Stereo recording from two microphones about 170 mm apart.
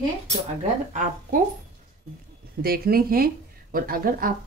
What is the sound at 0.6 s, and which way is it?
Speech, 45° right (ahead or behind).